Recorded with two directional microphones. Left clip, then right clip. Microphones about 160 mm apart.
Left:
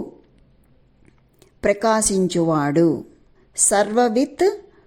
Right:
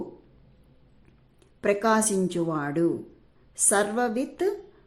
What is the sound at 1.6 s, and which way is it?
A woman's voice, 35° left (ahead or behind).